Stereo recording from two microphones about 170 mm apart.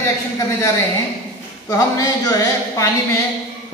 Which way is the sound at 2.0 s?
20° left (ahead or behind).